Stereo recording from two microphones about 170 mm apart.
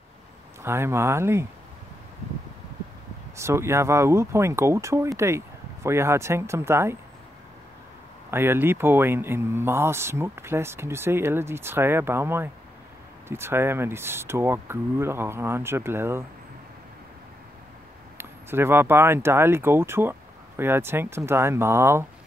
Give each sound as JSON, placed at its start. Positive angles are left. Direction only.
{"t": 0.6, "sound": "speech", "side_deg": -15}
{"t": 3.3, "sound": "speech", "side_deg": -15}
{"t": 8.3, "sound": "speech", "side_deg": -15}
{"t": 18.1, "sound": "speech", "side_deg": -15}